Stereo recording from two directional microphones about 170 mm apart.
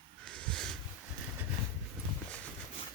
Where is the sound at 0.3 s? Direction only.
5° left (ahead or behind).